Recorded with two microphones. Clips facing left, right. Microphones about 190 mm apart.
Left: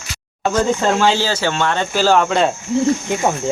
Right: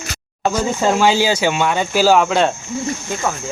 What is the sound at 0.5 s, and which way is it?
Speech, 10° right (ahead or behind).